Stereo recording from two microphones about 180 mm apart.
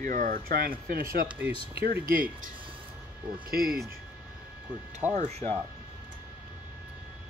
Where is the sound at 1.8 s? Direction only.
60° right (ahead or behind).